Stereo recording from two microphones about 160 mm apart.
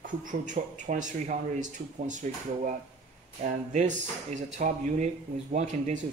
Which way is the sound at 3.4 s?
50° right (ahead or behind).